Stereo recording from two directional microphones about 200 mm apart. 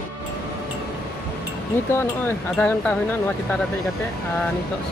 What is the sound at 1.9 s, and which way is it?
Speech, 10° left (ahead or behind).